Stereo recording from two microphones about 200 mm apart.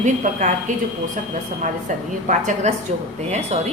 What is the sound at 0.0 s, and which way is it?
Speech, 40° right (ahead or behind).